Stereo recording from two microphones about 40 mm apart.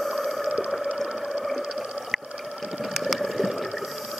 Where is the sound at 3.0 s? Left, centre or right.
Centre.